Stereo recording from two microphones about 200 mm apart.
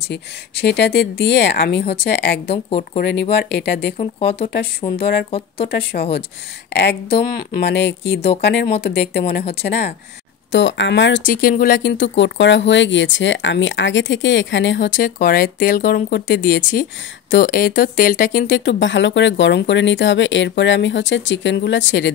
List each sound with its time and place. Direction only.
0.1 s speech: 55° left (ahead or behind)
2.5 s speech: 30° left (ahead or behind)
3.0 s speech: 60° left (ahead or behind)
4.0 s speech: 25° left (ahead or behind)
4.9 s speech: 50° left (ahead or behind)
6.7 s speech: 60° left (ahead or behind)
10.5 s speech: 65° left (ahead or behind)
11.2 s speech: 45° left (ahead or behind)
11.8 s speech: 65° left (ahead or behind)
14.9 s speech: 45° left (ahead or behind)
18.5 s speech: 65° left (ahead or behind)